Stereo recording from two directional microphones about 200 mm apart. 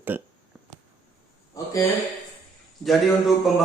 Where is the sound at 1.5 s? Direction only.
15° left (ahead or behind).